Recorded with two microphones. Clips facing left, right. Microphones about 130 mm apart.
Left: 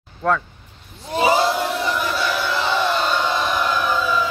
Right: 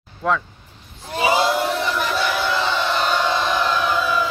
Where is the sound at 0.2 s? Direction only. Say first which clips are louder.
Left 1 dB; 5° right (ahead or behind).